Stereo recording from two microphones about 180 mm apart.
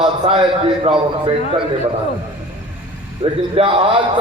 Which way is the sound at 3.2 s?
35° right (ahead or behind).